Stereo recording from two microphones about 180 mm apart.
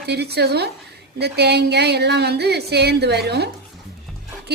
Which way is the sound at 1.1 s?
65° right (ahead or behind).